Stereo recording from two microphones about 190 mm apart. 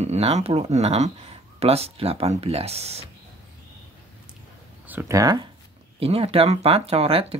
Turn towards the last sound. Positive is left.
turn(degrees=-30)  # may be behind; listen again after turning